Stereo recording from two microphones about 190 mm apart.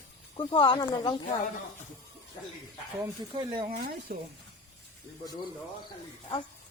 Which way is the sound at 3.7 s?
50° right (ahead or behind).